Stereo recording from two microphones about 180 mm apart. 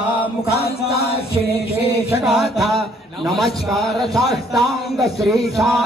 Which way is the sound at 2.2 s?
Centre (ahead or behind).